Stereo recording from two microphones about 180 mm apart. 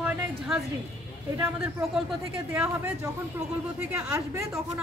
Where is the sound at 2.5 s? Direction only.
15° right (ahead or behind).